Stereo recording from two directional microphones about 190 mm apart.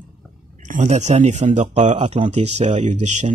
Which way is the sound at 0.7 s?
40° right (ahead or behind).